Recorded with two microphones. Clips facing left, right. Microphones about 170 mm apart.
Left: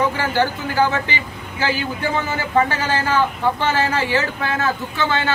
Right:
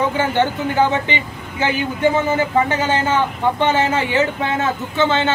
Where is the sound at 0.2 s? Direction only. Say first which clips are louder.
Right 2 dB; 20° right (ahead or behind).